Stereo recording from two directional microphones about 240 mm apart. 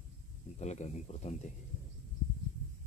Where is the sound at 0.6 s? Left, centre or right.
Left.